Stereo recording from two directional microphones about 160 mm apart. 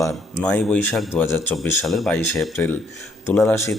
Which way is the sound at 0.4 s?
10° left (ahead or behind).